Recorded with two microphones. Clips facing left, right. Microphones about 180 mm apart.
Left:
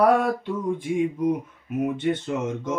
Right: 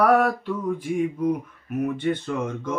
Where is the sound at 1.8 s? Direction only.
20° left (ahead or behind).